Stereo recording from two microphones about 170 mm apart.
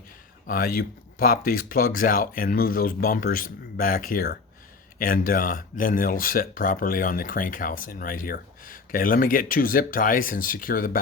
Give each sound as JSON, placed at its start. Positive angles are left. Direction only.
{"t": 0.4, "sound": "speech", "side_deg": 55}